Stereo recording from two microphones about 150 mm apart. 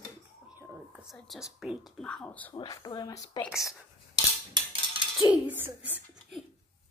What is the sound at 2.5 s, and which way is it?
Speech, 30° left (ahead or behind).